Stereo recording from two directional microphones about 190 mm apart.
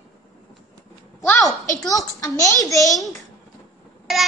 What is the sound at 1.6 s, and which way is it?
A woman's voice, 15° left (ahead or behind).